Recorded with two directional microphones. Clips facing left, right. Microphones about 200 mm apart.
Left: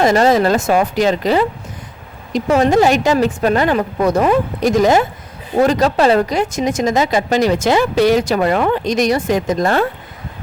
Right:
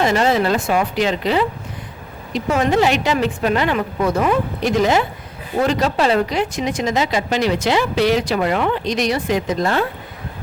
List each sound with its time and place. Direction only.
0.0 s speech: 40° left (ahead or behind)